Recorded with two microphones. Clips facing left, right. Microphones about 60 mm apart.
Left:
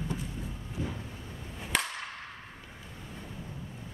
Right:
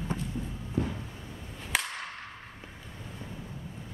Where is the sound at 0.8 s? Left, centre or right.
Right.